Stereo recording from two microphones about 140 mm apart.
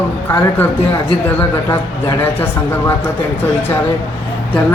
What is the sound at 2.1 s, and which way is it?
Speech, 20° left (ahead or behind).